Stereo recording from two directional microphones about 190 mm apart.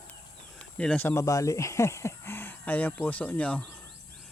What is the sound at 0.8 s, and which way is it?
Speech, 5° left (ahead or behind).